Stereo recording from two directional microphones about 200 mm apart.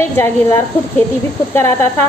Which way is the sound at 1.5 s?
10° left (ahead or behind).